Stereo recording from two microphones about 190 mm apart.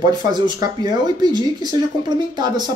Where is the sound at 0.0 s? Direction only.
20° right (ahead or behind).